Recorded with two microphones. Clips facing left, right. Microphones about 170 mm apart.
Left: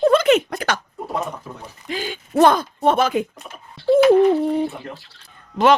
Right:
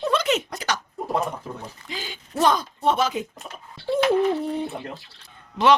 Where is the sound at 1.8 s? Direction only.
55° left (ahead or behind).